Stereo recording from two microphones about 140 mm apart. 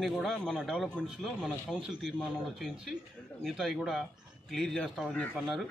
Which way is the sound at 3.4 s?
Centre (ahead or behind).